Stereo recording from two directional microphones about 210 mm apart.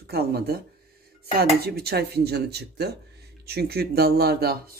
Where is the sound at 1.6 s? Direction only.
50° right (ahead or behind).